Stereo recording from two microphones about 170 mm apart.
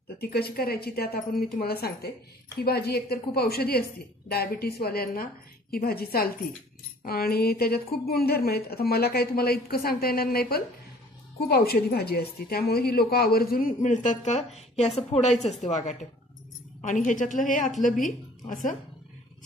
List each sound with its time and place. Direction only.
0.2 s a woman's voice: 65° left (ahead or behind); by 18.8 s 50° left (ahead or behind)